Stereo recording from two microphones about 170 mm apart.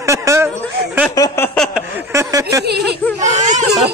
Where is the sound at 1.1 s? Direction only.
15° left (ahead or behind).